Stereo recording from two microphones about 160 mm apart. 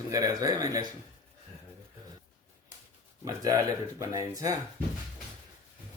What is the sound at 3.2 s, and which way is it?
Speech, 25° right (ahead or behind).